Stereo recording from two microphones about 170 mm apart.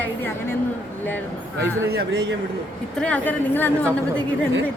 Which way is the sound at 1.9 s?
75° right (ahead or behind).